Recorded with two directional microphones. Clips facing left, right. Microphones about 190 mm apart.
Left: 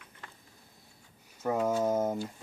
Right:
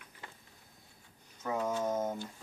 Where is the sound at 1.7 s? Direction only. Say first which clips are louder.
Left 5 dB; 30° left (ahead or behind).